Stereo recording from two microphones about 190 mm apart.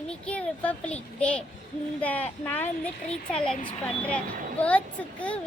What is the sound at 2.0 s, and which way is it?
Speech, 10° left (ahead or behind).